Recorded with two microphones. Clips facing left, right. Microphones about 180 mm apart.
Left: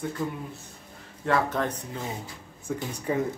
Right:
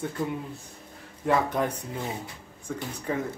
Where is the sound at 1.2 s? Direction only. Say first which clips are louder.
Right 1 dB; 10° right (ahead or behind).